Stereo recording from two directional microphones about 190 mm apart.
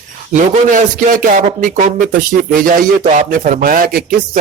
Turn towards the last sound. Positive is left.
turn(degrees=-50)  # may be behind; listen again after turning